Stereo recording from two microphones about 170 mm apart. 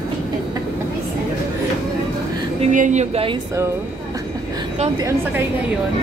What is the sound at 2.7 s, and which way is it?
Speech, 45° right (ahead or behind).